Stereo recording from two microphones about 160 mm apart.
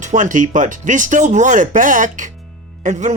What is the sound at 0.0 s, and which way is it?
Speech, 50° right (ahead or behind).